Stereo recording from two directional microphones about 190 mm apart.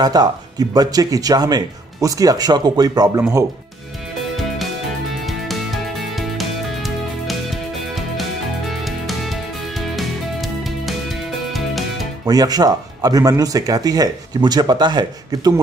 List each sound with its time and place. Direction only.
0.0 s speech: 20° right (ahead or behind)
5.2 s music: centre (ahead or behind)
12.3 s speech: 20° right (ahead or behind)